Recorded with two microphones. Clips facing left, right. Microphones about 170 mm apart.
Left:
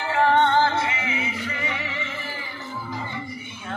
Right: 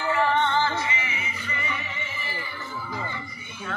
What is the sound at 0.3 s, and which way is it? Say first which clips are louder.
Music: left 5 dB; 55° left (ahead or behind).